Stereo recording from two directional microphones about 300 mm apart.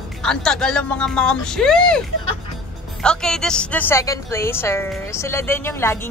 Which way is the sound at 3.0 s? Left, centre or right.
Centre.